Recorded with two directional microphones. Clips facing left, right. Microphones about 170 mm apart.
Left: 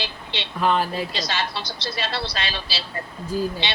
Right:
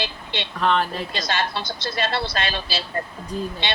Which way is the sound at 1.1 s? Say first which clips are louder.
Right 2 dB; 50° right (ahead or behind).